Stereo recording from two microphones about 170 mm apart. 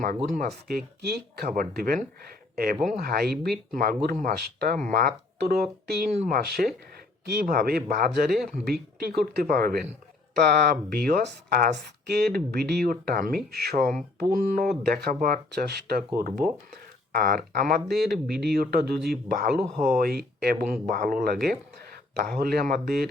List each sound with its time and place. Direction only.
0.0 s speech: 60° right (ahead or behind)
1.0 s speech: 70° right (ahead or behind)
1.5 s speech: 60° right (ahead or behind)
3.7 s speech: 55° right (ahead or behind)
10.3 s speech: 70° right (ahead or behind)